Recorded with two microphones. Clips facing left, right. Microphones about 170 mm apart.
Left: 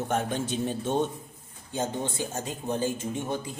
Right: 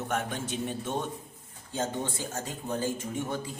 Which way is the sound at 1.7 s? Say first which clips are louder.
Left 2 dB; 20° left (ahead or behind).